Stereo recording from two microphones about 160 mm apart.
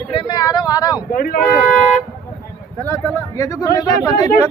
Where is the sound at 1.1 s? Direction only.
65° left (ahead or behind).